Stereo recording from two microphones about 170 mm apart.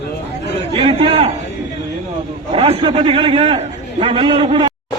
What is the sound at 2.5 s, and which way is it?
A man's voice, 35° right (ahead or behind).